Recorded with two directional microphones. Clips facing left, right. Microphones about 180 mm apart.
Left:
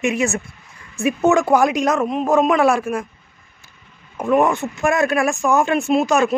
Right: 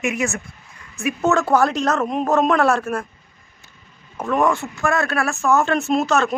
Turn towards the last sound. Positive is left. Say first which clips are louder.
# left 2 dB
turn(degrees=10)  # may be behind; listen again after turning